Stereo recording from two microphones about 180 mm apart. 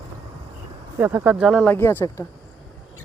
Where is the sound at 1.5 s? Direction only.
5° left (ahead or behind).